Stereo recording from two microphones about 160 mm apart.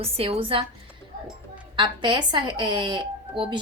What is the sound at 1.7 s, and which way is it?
A woman's voice, 30° right (ahead or behind).